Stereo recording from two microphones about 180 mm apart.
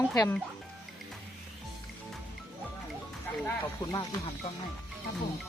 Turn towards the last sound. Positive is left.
turn(degrees=20)  # may be behind; listen again after turning